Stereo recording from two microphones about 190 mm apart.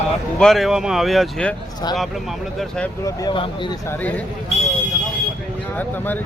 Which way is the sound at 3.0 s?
20° left (ahead or behind).